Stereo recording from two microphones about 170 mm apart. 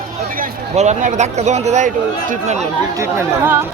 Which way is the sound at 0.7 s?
40° right (ahead or behind).